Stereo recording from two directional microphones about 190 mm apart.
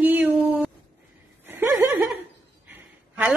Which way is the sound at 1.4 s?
10° right (ahead or behind).